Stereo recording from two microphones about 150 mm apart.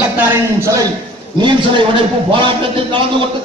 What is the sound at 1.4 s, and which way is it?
A man's voice, 35° right (ahead or behind).